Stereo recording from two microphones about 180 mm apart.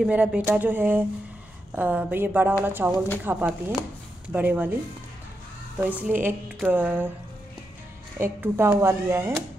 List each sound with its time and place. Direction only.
0.0 s speech: 5° right (ahead or behind)
5.8 s speech: 10° right (ahead or behind)
8.2 s speech: 15° right (ahead or behind)